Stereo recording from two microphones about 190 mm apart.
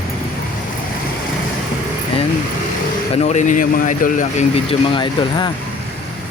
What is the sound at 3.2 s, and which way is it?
Speech, 40° left (ahead or behind).